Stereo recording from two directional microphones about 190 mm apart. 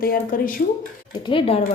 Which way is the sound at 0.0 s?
50° left (ahead or behind).